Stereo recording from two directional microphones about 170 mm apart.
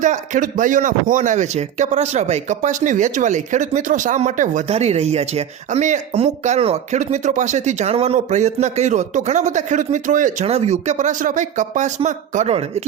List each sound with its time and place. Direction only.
0.0 s speech: 50° right (ahead or behind)